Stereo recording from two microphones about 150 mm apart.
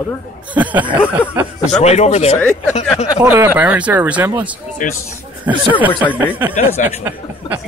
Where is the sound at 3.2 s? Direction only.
15° right (ahead or behind).